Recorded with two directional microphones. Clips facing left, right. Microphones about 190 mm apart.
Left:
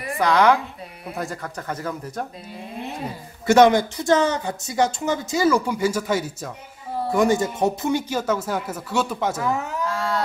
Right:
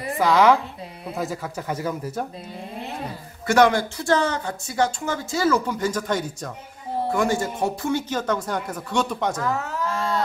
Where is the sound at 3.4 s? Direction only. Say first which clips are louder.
Left 3 dB; 20° left (ahead or behind).